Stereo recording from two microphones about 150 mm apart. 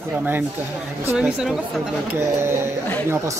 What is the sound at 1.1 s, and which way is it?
Speech, 5° right (ahead or behind).